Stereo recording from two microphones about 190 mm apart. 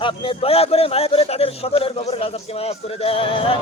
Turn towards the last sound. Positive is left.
turn(degrees=30)  # may be behind; listen again after turning